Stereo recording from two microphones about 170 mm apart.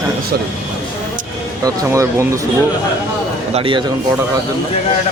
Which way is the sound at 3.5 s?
30° right (ahead or behind).